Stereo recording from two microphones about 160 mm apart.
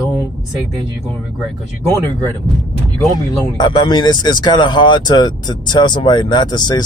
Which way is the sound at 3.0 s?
25° left (ahead or behind).